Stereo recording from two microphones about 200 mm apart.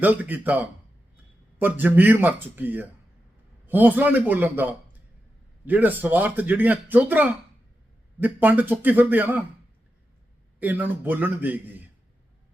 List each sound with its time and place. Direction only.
0.0 s speech: 10° right (ahead or behind)
10.6 s speech: 10° right (ahead or behind)